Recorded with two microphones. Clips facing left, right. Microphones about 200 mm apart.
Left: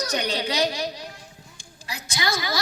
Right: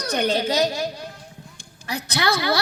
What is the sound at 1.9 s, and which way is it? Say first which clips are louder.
Speech: right 5 dB; 60° right (ahead or behind).